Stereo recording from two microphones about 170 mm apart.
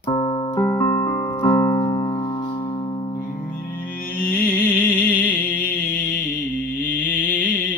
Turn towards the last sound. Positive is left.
turn(degrees=10)  # may be behind; listen again after turning